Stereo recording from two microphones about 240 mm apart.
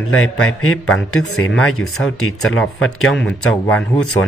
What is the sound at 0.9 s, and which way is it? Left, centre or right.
Speech, centre.